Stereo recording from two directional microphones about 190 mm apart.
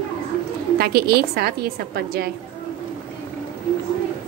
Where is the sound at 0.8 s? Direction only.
55° right (ahead or behind).